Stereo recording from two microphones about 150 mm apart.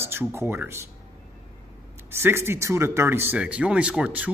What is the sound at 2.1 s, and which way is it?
A man's voice, 15° right (ahead or behind).